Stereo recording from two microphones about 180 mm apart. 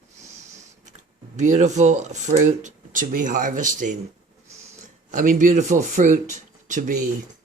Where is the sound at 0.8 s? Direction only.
40° right (ahead or behind).